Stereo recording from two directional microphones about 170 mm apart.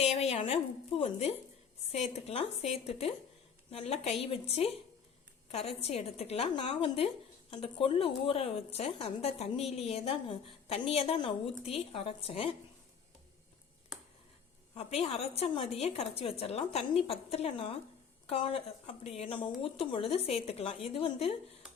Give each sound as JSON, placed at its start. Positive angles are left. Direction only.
{"t": 0.0, "sound": "a woman's voice", "side_deg": 40}
{"t": 13.9, "sound": "a sound", "side_deg": 0}
{"t": 14.8, "sound": "a woman's voice", "side_deg": 40}